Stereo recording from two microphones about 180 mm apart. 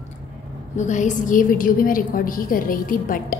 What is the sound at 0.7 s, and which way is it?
A woman's voice, 45° left (ahead or behind).